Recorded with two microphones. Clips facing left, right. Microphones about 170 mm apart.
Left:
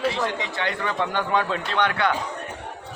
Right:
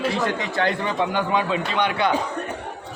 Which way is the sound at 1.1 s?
10° right (ahead or behind).